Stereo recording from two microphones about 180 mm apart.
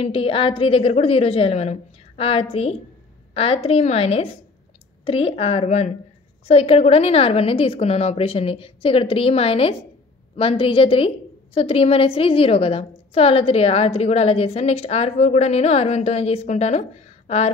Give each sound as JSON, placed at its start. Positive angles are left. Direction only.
{"t": 0.0, "sound": "a woman's voice", "side_deg": 30}